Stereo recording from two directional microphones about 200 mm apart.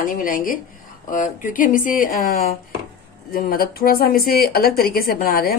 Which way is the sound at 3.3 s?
45° left (ahead or behind).